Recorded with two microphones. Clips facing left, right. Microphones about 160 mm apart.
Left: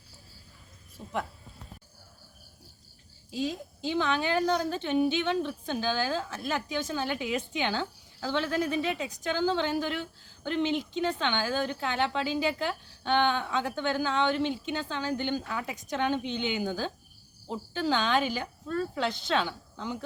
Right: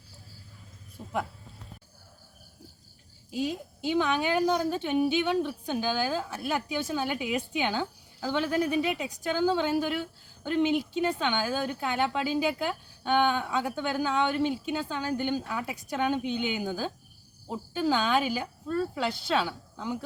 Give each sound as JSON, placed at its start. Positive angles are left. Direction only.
{"t": 1.0, "sound": "a woman's voice", "side_deg": -10}
{"t": 3.3, "sound": "a woman's voice", "side_deg": -10}